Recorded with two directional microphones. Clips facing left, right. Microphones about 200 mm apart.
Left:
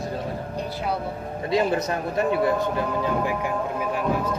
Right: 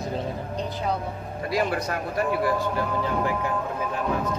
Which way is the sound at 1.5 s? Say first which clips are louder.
Left 3 dB; 25° left (ahead or behind).